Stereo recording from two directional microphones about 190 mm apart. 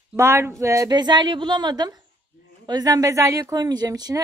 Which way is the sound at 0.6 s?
15° right (ahead or behind).